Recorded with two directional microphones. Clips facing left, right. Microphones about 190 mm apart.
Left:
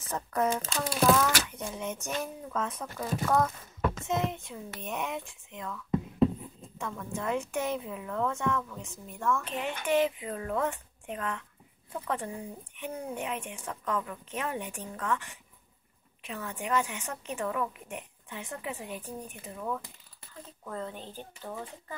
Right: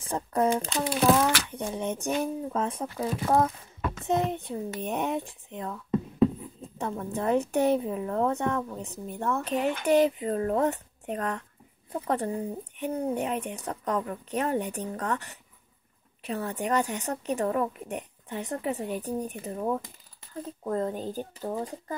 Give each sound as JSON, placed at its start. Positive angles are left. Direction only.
{"t": 0.0, "sound": "a woman's voice", "side_deg": -30}
{"t": 4.1, "sound": "a woman's voice", "side_deg": -35}
{"t": 6.8, "sound": "a woman's voice", "side_deg": -35}